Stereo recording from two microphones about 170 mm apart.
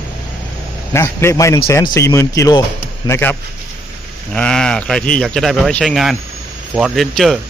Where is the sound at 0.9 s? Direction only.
15° left (ahead or behind).